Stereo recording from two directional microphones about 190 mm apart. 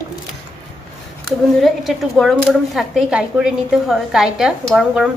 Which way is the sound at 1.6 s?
Centre (ahead or behind).